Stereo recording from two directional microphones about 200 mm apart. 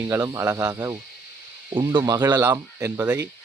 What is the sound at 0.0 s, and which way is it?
Speech, 15° right (ahead or behind).